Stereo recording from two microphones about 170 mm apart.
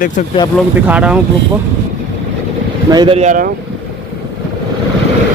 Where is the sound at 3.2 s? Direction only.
50° right (ahead or behind).